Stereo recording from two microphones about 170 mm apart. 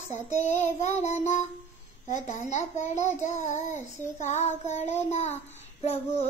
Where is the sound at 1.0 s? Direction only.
40° left (ahead or behind).